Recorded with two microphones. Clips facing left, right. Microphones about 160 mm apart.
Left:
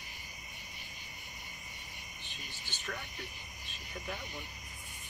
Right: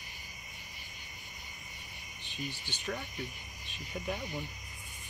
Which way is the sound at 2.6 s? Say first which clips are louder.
Right 1 dB; 15° right (ahead or behind).